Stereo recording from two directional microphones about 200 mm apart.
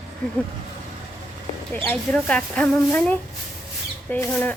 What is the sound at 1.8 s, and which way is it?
Speech, 5° left (ahead or behind).